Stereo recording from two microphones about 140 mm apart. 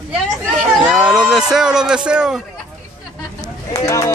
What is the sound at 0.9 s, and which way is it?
Speech, 5° right (ahead or behind).